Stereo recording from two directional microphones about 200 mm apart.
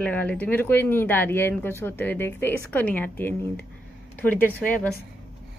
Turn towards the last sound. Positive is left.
turn(degrees=10)  # may be behind; listen again after turning